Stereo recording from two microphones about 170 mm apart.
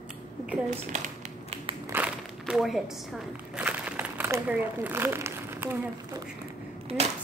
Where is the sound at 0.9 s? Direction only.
45° right (ahead or behind).